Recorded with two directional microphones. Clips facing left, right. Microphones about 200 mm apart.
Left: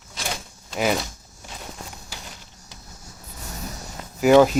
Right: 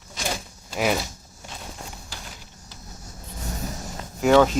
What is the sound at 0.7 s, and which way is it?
Speech, centre (ahead or behind).